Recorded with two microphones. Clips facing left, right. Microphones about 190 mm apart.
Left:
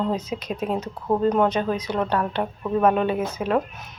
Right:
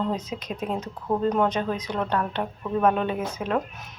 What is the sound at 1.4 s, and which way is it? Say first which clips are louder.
Speech: left 3 dB; 5° left (ahead or behind).